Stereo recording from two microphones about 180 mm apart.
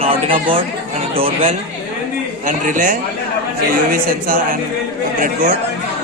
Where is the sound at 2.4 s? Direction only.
45° right (ahead or behind).